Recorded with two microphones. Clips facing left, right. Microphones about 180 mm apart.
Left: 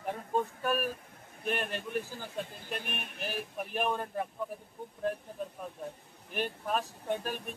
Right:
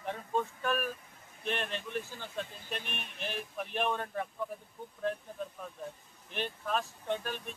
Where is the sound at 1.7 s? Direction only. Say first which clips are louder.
Left 2 dB; 45° left (ahead or behind).